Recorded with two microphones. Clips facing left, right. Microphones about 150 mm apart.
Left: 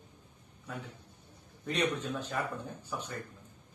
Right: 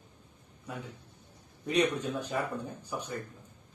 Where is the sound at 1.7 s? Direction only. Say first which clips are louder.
Right 4 dB; 15° right (ahead or behind).